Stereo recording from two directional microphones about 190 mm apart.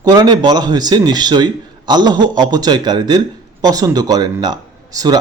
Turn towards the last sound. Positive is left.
turn(degrees=-20)  # may be behind; listen again after turning